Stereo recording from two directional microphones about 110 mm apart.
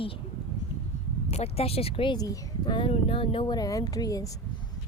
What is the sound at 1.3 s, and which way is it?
Speech, 70° left (ahead or behind).